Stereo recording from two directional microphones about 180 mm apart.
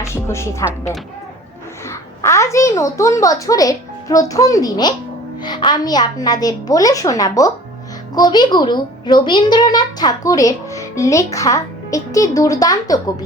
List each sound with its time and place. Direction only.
0.0 s a woman's voice: 15° left (ahead or behind)